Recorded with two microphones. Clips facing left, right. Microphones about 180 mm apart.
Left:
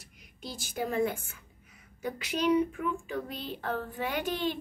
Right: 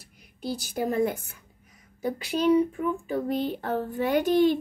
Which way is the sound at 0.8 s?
40° right (ahead or behind).